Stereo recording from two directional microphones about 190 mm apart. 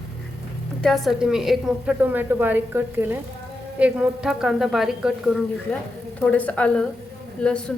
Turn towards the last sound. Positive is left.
turn(degrees=5)  # may be behind; listen again after turning